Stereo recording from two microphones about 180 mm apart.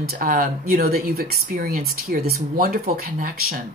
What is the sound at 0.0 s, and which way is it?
A woman's voice, 50° right (ahead or behind).